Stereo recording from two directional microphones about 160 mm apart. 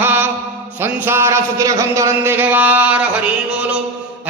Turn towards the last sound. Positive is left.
turn(degrees=-10)  # may be behind; listen again after turning